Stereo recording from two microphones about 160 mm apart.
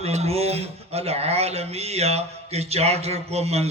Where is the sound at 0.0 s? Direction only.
40° right (ahead or behind).